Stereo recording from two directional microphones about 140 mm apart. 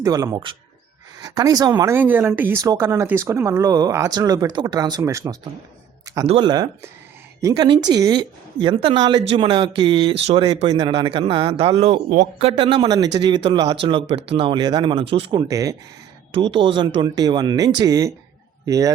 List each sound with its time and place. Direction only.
0.0 s speech: 25° right (ahead or behind)
2.0 s speech: 15° right (ahead or behind)
6.2 s speech: 45° right (ahead or behind)
7.5 s a man's voice: 30° right (ahead or behind)
15.4 s speech: 25° right (ahead or behind)
16.3 s a man's voice: 40° right (ahead or behind); by 18.9 s 25° right (ahead or behind)